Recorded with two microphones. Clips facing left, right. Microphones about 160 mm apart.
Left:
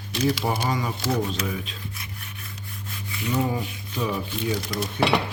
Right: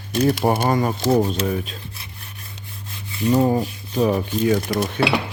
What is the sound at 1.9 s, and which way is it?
Rub, 30° right (ahead or behind).